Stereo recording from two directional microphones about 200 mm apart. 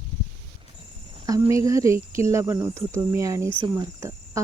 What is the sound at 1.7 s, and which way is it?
Speech, 15° right (ahead or behind).